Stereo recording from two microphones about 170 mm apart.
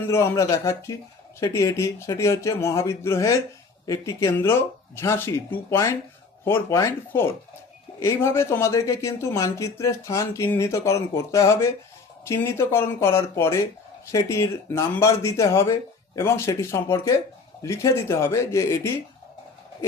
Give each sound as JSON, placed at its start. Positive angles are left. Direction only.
{"t": 0.1, "sound": "speech", "side_deg": 15}